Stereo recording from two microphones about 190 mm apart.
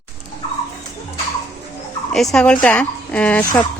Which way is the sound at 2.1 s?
Centre (ahead or behind).